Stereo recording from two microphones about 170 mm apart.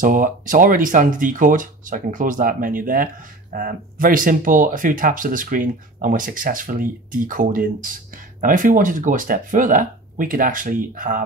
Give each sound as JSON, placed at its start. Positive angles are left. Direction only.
{"t": 0.0, "sound": "speech", "side_deg": -50}